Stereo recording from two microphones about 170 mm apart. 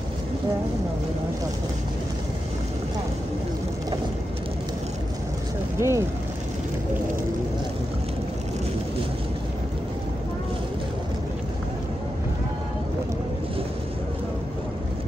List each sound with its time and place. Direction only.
5.8 s speech: 15° right (ahead or behind)